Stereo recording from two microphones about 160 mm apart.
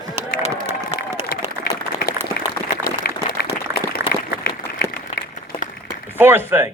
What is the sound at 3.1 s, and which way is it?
Applause, 85° left.